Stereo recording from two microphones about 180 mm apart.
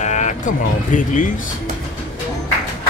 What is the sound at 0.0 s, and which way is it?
Speech, 40° left (ahead or behind).